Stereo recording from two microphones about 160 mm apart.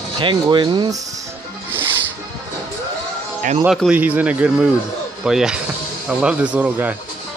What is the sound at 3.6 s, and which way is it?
Speech, 5° right (ahead or behind).